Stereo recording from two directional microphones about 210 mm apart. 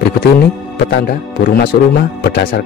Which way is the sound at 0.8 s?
55° left (ahead or behind).